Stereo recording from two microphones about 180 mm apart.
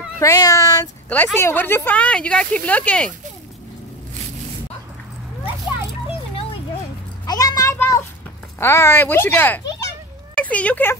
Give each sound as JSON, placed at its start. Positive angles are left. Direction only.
{"t": 0.2, "sound": "speech", "side_deg": 20}
{"t": 6.0, "sound": "children playing", "side_deg": 30}
{"t": 7.2, "sound": "a sound", "side_deg": 20}
{"t": 8.5, "sound": "speech", "side_deg": 15}